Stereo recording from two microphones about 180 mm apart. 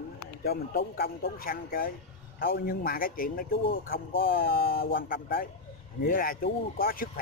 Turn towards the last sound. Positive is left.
turn(degrees=55)  # may be behind; listen again after turning